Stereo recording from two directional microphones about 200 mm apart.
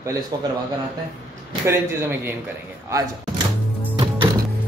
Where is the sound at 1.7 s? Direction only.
15° right (ahead or behind).